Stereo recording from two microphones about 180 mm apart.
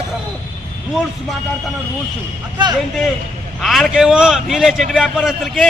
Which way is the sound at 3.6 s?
Centre (ahead or behind).